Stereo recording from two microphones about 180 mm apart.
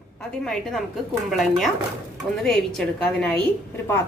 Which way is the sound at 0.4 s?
Centre (ahead or behind).